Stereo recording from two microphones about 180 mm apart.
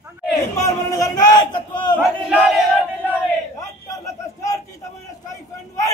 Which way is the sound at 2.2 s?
5° right (ahead or behind).